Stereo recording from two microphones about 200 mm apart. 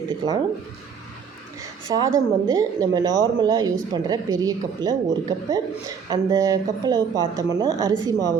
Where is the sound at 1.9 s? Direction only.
20° right (ahead or behind).